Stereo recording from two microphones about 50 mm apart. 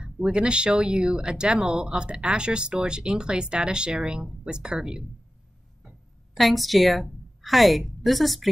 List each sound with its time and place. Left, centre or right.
0.0 s speech: centre
6.3 s a woman's voice: centre